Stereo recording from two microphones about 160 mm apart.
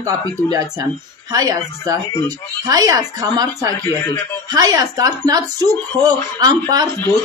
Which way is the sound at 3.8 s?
20° left (ahead or behind).